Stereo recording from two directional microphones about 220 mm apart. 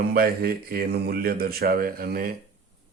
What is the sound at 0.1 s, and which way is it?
A man's voice, 45° right (ahead or behind).